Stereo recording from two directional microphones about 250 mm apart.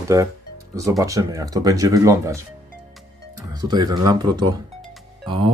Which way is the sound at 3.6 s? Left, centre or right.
Centre.